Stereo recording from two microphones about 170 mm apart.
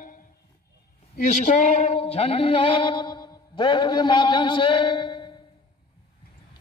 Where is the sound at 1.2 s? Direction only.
45° left (ahead or behind); by 5.3 s 25° left (ahead or behind).